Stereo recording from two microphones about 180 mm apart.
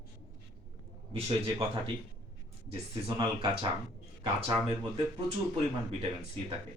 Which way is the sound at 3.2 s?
30° right (ahead or behind).